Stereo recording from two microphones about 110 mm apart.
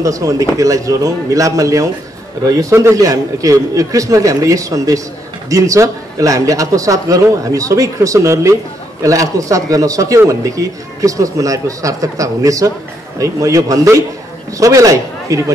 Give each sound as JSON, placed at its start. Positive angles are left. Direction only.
{"t": 0.0, "sound": "a man's voice", "side_deg": -30}